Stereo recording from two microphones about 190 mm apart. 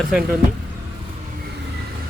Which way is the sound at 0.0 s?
Centre (ahead or behind).